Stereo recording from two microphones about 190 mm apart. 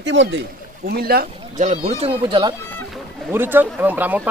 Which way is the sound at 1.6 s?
35° right (ahead or behind).